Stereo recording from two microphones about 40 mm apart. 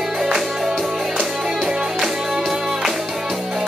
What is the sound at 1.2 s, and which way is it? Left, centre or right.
Music, centre.